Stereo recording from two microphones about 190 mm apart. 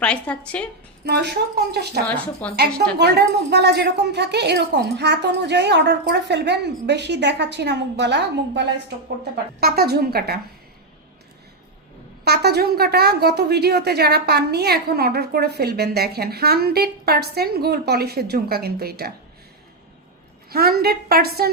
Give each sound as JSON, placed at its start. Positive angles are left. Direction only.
{"t": 0.0, "sound": "a woman's voice", "side_deg": 5}
{"t": 1.0, "sound": "a woman's voice", "side_deg": -60}
{"t": 2.4, "sound": "a woman's voice", "side_deg": 10}
{"t": 3.0, "sound": "a woman's voice", "side_deg": -60}
{"t": 9.6, "sound": "a woman's voice", "side_deg": -55}
{"t": 12.2, "sound": "a woman's voice", "side_deg": -60}
{"t": 20.5, "sound": "a woman's voice", "side_deg": -55}